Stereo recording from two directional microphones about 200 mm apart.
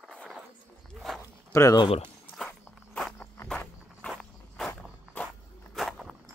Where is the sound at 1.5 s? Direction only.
15° left (ahead or behind).